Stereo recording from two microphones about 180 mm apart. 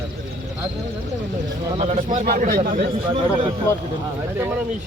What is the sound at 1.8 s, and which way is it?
Speech, 45° right (ahead or behind).